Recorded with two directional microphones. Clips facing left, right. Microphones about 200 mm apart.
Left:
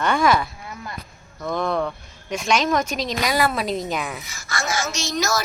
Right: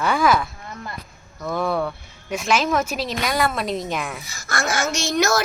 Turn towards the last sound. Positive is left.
turn(degrees=-55)  # may be behind; listen again after turning